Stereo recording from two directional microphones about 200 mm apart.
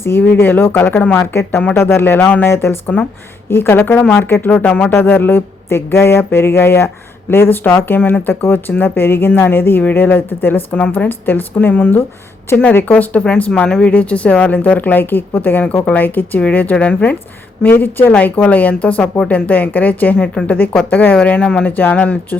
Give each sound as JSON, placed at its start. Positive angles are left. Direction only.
{"t": 0.0, "sound": "a woman's voice", "side_deg": 10}